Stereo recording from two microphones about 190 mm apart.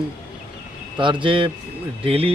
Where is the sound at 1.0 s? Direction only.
25° right (ahead or behind).